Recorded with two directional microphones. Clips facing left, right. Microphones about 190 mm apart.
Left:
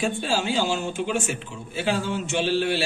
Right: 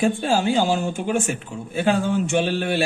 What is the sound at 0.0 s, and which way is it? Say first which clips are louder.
A man's voice: right 5 dB; 55° right (ahead or behind).